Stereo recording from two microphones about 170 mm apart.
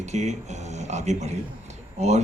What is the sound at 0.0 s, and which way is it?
A man's voice, 40° right (ahead or behind).